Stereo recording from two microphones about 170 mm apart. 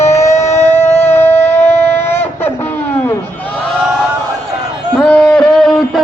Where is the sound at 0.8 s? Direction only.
15° left (ahead or behind).